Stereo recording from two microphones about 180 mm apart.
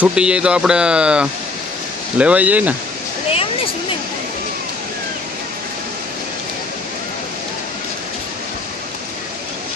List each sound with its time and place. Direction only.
0.0 s speech: 5° right (ahead or behind)